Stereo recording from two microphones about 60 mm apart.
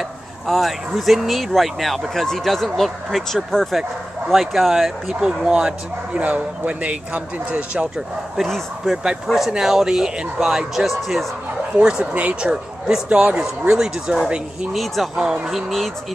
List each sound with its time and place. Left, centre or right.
0.5 s speech: centre
8.5 s speech: centre
8.9 s speech: centre
12.0 s speech: right
14.7 s speech: centre